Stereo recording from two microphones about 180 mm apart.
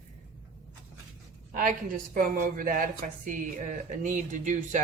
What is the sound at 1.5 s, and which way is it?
A woman's voice, 50° right (ahead or behind).